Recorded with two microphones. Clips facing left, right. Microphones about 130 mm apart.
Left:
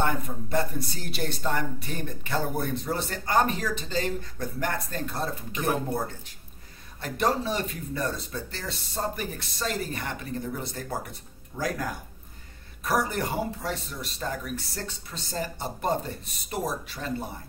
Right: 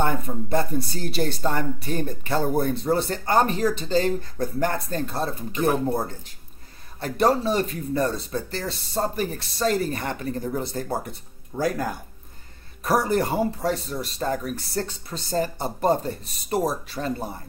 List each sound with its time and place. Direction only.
0.0 s speech: 30° right (ahead or behind)
12.8 s speech: 35° right (ahead or behind)